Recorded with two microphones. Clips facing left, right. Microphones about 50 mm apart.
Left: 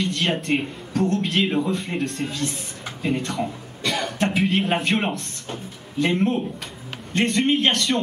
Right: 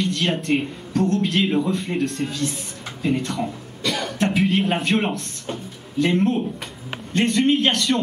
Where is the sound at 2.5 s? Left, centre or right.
Centre.